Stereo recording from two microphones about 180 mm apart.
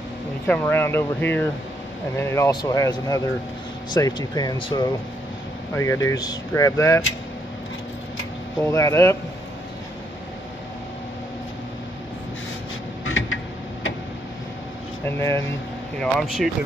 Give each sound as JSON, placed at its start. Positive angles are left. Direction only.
{"t": 0.5, "sound": "speech", "side_deg": 10}
{"t": 8.6, "sound": "speech", "side_deg": 15}
{"t": 13.0, "sound": "a sound", "side_deg": 90}
{"t": 15.0, "sound": "speech", "side_deg": 15}
{"t": 16.0, "sound": "speech", "side_deg": 0}